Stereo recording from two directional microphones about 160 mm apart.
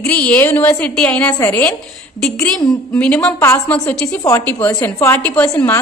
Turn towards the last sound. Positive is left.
turn(degrees=10)  # may be behind; listen again after turning